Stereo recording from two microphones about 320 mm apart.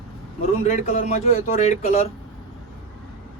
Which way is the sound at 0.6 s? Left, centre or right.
Left.